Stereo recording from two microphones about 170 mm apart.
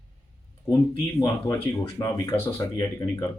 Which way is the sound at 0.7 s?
20° left (ahead or behind).